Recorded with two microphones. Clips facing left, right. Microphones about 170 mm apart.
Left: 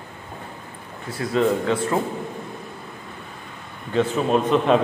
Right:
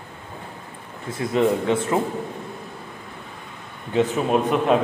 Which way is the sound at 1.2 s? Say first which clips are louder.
Even; 20° right (ahead or behind).